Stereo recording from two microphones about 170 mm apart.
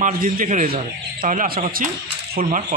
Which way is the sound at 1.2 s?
55° right (ahead or behind).